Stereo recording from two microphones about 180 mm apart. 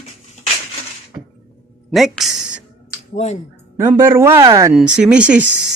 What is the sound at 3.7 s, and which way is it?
Speech, 15° right (ahead or behind).